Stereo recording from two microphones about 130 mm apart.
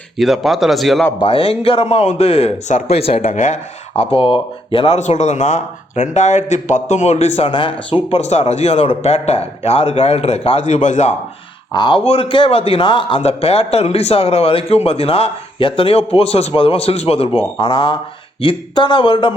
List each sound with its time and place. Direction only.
0.2 s speech: centre (ahead or behind)
1.2 s a man's voice: 45° left (ahead or behind)
3.3 s a man's voice: 65° left (ahead or behind); by 4.9 s 45° left (ahead or behind)
4.9 s speech: 65° left (ahead or behind); by 7.9 s 40° left (ahead or behind)
8.1 s a man's voice: 55° left (ahead or behind)
10.7 s speech: 65° left (ahead or behind)
11.7 s a man's voice: 40° left (ahead or behind)